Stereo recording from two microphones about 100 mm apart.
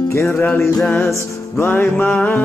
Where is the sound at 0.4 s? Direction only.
20° left (ahead or behind).